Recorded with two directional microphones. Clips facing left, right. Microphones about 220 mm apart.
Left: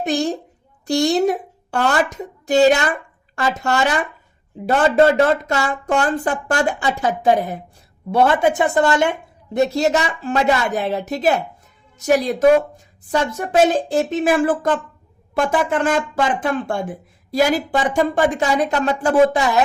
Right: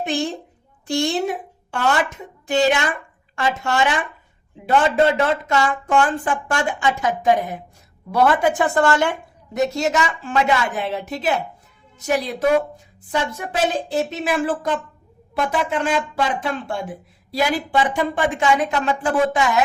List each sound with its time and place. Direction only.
0.0 s a woman's voice: 40° left (ahead or behind); by 9.1 s 20° left (ahead or behind)
9.5 s a woman's voice: 35° left (ahead or behind)